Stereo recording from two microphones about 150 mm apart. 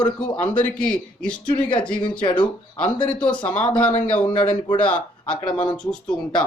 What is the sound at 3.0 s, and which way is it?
Speech, 10° left (ahead or behind).